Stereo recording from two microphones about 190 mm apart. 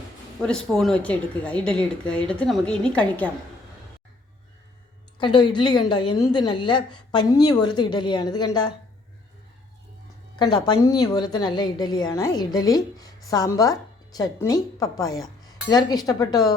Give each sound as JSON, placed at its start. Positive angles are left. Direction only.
{"t": 0.4, "sound": "a woman's voice", "side_deg": 5}
{"t": 5.2, "sound": "a woman's voice", "side_deg": 25}
{"t": 10.3, "sound": "a woman's voice", "side_deg": 20}